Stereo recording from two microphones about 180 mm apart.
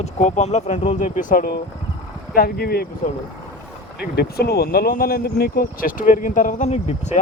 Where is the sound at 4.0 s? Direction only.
60° left (ahead or behind); by 7.1 s 35° left (ahead or behind).